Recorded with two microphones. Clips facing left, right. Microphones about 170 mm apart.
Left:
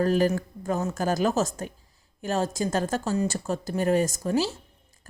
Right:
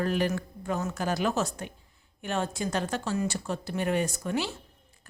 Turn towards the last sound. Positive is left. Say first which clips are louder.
# left 5 dB
turn(degrees=35)  # may be behind; listen again after turning